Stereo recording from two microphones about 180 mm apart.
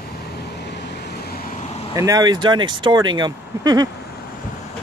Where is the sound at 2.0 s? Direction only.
20° right (ahead or behind).